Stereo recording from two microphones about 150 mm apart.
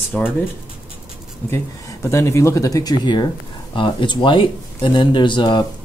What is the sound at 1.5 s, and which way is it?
Speech, 20° left (ahead or behind).